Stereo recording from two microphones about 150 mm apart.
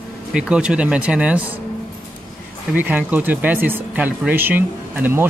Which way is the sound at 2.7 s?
10° right (ahead or behind).